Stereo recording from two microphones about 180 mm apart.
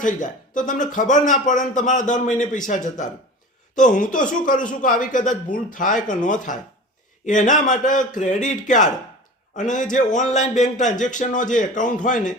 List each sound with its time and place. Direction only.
0.0 s speech: 45° left (ahead or behind)